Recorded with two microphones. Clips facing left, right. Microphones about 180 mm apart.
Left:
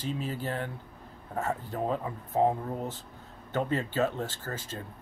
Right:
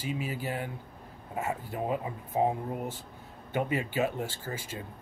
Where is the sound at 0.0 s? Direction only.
10° right (ahead or behind).